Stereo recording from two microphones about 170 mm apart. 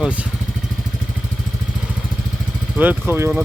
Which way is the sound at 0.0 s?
10° right (ahead or behind).